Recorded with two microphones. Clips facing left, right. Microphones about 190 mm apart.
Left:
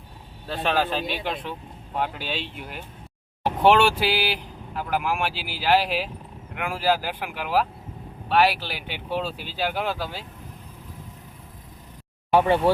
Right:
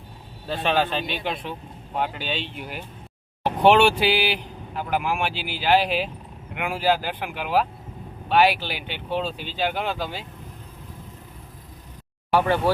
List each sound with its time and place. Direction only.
0.4 s speech: centre (ahead or behind)
12.3 s speech: 25° left (ahead or behind)